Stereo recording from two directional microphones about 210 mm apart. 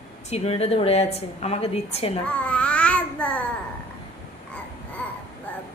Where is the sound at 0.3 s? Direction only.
30° left (ahead or behind).